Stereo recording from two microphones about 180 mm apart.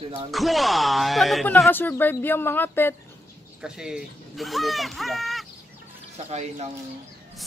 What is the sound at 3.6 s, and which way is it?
Speech, 5° right (ahead or behind).